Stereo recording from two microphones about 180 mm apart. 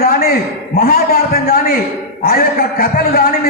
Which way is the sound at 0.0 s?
60° left (ahead or behind).